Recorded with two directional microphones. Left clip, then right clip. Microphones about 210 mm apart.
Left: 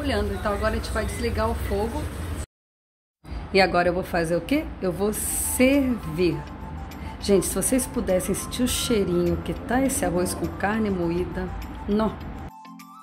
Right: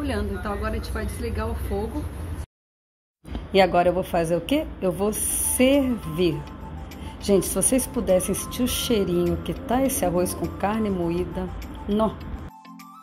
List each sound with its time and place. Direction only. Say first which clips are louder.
0.0 s a woman's voice: left 3 dB; 20° right (ahead or behind)
1.7 s speech: even; centre (ahead or behind)
3.5 s speech: right 1 dB; 5° right (ahead or behind)
7.2 s speech: even; 5° right (ahead or behind)